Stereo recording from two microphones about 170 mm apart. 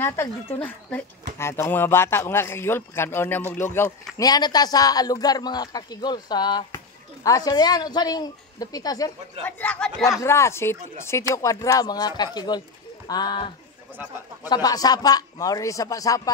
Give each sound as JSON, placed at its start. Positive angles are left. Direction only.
{"t": 0.0, "sound": "speech", "side_deg": 15}
{"t": 9.4, "sound": "speech", "side_deg": 10}
{"t": 14.5, "sound": "speech", "side_deg": 20}